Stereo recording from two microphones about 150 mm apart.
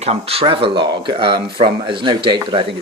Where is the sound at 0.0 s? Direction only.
40° right (ahead or behind).